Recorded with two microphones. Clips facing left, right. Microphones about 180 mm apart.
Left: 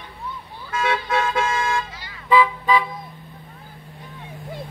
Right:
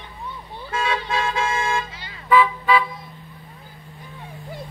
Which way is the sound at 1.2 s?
25° right (ahead or behind).